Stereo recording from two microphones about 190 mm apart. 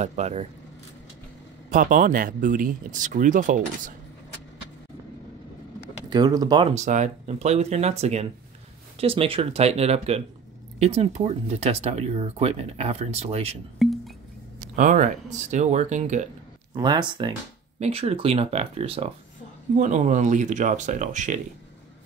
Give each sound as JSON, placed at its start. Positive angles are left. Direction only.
{"t": 0.0, "sound": "speech", "side_deg": -35}
{"t": 1.7, "sound": "speech", "side_deg": -45}
{"t": 6.0, "sound": "speech", "side_deg": -20}
{"t": 6.7, "sound": "speech", "side_deg": -35}
{"t": 13.7, "sound": "music", "side_deg": 0}
{"t": 14.8, "sound": "speech", "side_deg": -40}
{"t": 16.7, "sound": "speech", "side_deg": -25}